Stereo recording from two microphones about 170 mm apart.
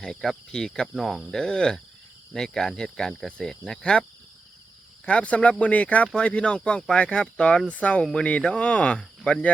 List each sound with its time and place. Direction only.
0.0 s cricket: 5° left (ahead or behind)
5.0 s speech: 5° left (ahead or behind)